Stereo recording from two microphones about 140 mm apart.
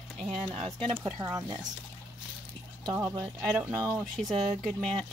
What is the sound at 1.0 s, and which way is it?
Speech, 20° right (ahead or behind).